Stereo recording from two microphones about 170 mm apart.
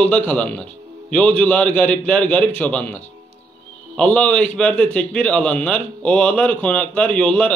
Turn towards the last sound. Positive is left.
turn(degrees=5)  # may be behind; listen again after turning